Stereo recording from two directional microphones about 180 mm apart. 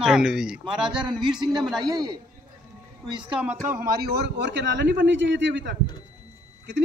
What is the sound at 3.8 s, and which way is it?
A man's voice, 55° right (ahead or behind).